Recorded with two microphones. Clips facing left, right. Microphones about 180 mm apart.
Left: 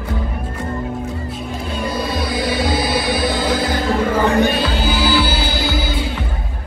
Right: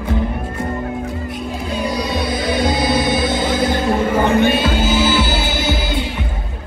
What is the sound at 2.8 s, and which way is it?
Music, 20° right (ahead or behind).